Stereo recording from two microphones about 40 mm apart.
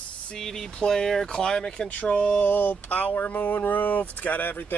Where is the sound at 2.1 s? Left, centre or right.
Left.